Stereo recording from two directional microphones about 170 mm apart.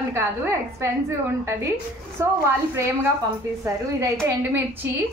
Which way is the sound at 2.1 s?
15° right (ahead or behind).